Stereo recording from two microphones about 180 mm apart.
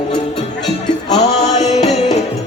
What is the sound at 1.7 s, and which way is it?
Music, 35° left (ahead or behind).